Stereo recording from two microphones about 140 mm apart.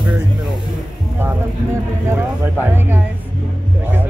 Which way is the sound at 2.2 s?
15° right (ahead or behind).